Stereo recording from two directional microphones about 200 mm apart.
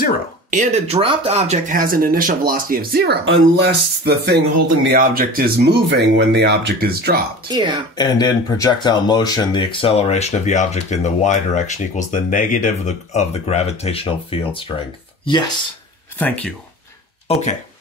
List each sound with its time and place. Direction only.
0.5 s speech: 35° right (ahead or behind); by 7.2 s 50° right (ahead or behind)
7.4 s speech: 20° right (ahead or behind)
7.9 s speech: 20° left (ahead or behind)
16.2 s speech: 5° left (ahead or behind)
17.3 s speech: 30° left (ahead or behind)